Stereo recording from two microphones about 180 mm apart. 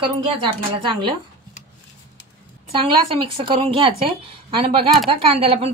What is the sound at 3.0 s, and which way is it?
A woman's voice, 30° right (ahead or behind).